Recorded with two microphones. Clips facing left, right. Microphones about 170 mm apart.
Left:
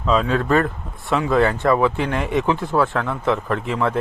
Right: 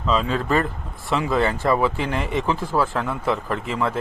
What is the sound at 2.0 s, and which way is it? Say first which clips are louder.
Speech: left 2 dB; 50° left (ahead or behind).